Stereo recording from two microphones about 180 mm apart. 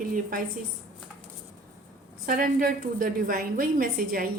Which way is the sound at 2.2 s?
50° right (ahead or behind).